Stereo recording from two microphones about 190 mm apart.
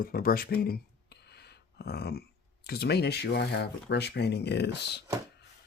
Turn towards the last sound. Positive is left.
turn(degrees=60)  # may be behind; listen again after turning